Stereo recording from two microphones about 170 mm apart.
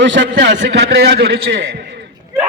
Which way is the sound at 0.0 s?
90° right.